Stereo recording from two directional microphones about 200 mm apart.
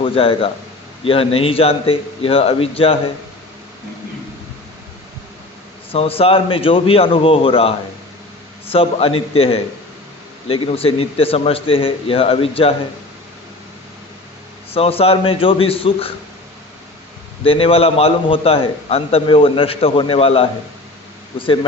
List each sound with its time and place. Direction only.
0.0 s a man's voice: 25° left (ahead or behind)
5.9 s a man's voice: 30° left (ahead or behind)
14.7 s a man's voice: 30° left (ahead or behind)
17.4 s a man's voice: 30° left (ahead or behind)